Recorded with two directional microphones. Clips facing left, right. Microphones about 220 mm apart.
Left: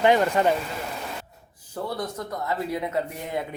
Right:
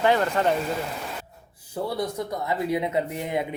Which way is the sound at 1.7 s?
10° right (ahead or behind).